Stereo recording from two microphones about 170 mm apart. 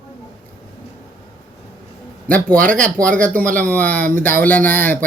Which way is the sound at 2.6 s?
50° right (ahead or behind).